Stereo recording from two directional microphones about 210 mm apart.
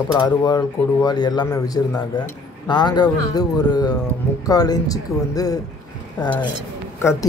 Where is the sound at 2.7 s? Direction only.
20° left (ahead or behind).